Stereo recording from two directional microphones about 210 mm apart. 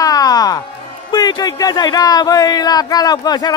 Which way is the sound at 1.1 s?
20° left (ahead or behind).